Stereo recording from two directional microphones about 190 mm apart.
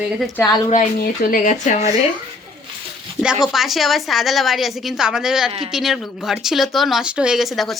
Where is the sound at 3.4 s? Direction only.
Centre (ahead or behind).